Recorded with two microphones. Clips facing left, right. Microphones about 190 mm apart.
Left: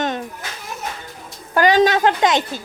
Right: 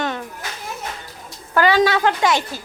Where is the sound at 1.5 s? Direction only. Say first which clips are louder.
Left 2 dB; 15° left (ahead or behind).